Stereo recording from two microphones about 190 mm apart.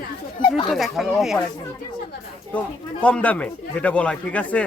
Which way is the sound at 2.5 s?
5° left (ahead or behind).